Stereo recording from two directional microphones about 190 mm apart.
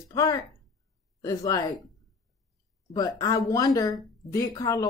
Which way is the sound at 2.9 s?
20° left (ahead or behind).